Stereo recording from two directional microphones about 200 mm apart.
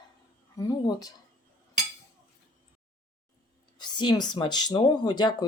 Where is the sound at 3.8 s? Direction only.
20° left (ahead or behind).